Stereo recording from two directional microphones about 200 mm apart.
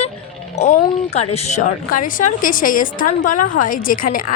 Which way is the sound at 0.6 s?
35° left (ahead or behind).